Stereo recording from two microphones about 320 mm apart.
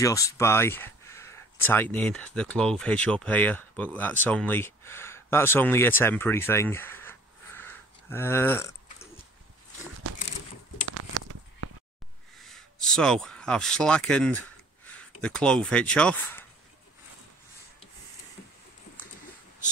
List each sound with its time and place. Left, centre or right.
0.0 s speech: centre
10.9 s a sound: right
12.4 s speech: centre